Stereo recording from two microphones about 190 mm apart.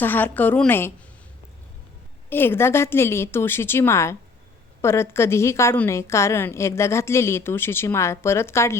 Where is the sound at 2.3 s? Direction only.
10° left (ahead or behind).